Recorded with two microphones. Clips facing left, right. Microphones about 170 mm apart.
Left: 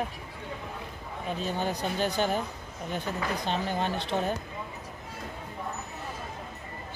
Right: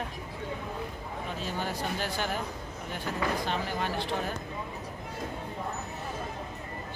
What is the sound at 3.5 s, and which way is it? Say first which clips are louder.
Speech: left 2 dB; 20° left (ahead or behind).